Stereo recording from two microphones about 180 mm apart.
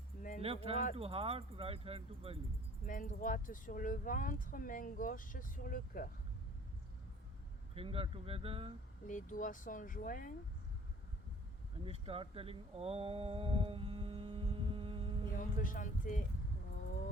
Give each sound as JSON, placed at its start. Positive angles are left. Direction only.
{"t": 0.2, "sound": "a sound", "side_deg": 45}
{"t": 0.4, "sound": "speech", "side_deg": -30}
{"t": 2.8, "sound": "speech", "side_deg": 50}
{"t": 7.8, "sound": "speech", "side_deg": -30}
{"t": 9.0, "sound": "speech", "side_deg": 45}
{"t": 11.9, "sound": "speech", "side_deg": -30}
{"t": 15.4, "sound": "speech", "side_deg": 50}